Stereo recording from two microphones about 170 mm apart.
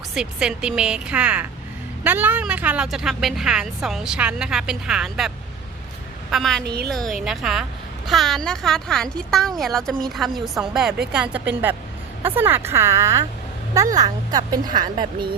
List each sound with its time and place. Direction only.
0.1 s speech: 5° right (ahead or behind)
6.3 s speech: centre (ahead or behind)
6.7 s a woman's voice: 70° right (ahead or behind)
6.9 s speech: centre (ahead or behind); by 15.4 s 25° right (ahead or behind)